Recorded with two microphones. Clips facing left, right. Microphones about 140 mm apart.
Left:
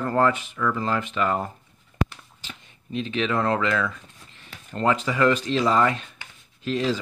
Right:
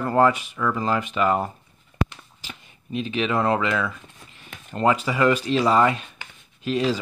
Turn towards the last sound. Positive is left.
turn(degrees=-15)  # may be behind; listen again after turning